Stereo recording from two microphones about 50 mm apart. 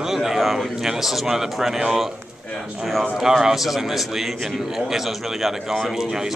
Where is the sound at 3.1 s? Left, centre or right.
Centre.